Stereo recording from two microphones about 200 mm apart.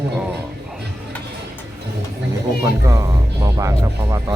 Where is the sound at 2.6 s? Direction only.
15° right (ahead or behind).